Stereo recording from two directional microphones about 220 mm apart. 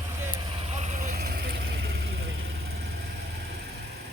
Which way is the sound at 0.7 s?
35° right (ahead or behind).